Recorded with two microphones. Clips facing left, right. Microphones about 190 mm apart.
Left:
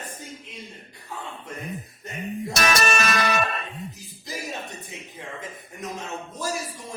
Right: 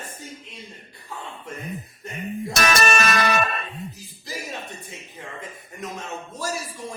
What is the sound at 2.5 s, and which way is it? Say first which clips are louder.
Music: right 2 dB; 50° right (ahead or behind).